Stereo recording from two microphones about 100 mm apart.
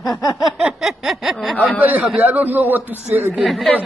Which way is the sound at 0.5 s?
Centre (ahead or behind).